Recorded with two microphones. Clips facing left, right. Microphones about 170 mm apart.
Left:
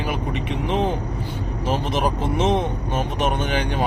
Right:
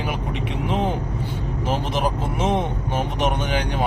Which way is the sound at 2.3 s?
10° right (ahead or behind).